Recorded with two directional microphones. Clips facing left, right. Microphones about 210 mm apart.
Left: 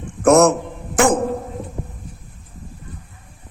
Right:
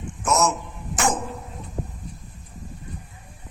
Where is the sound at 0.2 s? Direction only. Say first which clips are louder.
Left 11 dB; 60° left (ahead or behind).